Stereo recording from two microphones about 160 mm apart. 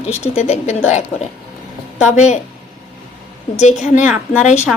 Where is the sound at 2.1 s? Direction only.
45° left (ahead or behind).